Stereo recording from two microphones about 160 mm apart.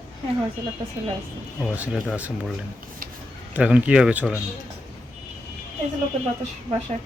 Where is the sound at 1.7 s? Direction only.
10° right (ahead or behind).